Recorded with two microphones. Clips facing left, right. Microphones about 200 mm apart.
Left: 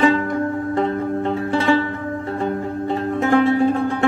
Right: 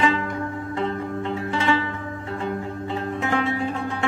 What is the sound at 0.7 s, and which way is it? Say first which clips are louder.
Zither: left 4 dB; 40° left (ahead or behind).